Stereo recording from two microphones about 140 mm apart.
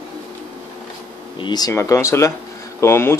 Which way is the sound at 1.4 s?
30° left (ahead or behind).